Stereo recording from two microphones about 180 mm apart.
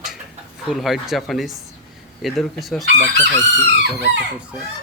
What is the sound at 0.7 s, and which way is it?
Speech, centre (ahead or behind).